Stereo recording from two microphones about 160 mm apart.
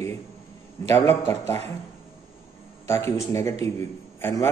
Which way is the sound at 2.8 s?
15° left (ahead or behind).